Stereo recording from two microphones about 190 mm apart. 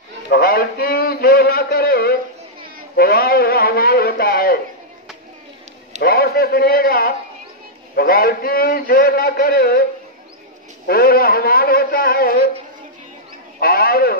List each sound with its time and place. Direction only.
0.3 s a man's voice: 50° left (ahead or behind)
6.0 s a man's voice: 55° left (ahead or behind)
10.9 s a man's voice: 50° left (ahead or behind)
13.6 s a sound: 55° left (ahead or behind)